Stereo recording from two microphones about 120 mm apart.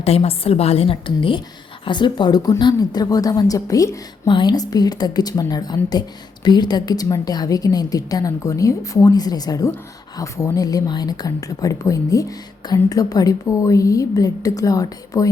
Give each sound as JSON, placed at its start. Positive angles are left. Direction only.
{"t": 0.0, "sound": "a woman's voice", "side_deg": 55}